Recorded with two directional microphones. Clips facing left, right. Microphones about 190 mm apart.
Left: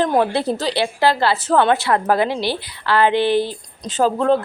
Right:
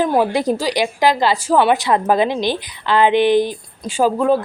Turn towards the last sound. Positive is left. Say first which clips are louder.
# right 1 dB
turn(degrees=-10)  # may be behind; listen again after turning